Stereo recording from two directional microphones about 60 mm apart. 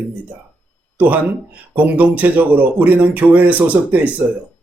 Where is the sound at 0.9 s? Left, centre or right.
Right.